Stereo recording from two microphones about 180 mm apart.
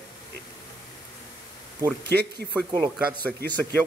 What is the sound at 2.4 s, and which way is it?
Speech, centre (ahead or behind).